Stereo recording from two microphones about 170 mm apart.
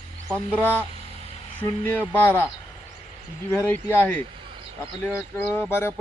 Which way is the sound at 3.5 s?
10° left (ahead or behind).